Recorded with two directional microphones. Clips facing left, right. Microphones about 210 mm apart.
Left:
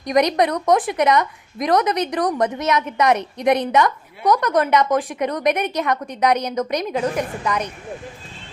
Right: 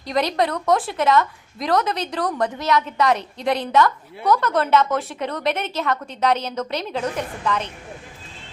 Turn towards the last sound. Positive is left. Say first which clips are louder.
# left 1 dB
turn(degrees=15)  # may be behind; listen again after turning